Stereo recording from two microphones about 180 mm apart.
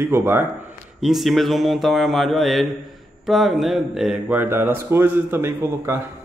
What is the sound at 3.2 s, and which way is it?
Speech, centre (ahead or behind).